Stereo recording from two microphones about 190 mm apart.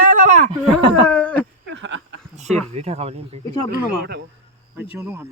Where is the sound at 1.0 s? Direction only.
5° left (ahead or behind).